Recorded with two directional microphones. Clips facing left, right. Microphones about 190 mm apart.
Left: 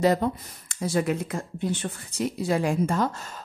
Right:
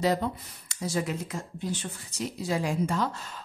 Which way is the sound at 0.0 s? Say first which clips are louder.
Left 4 dB; 50° left (ahead or behind).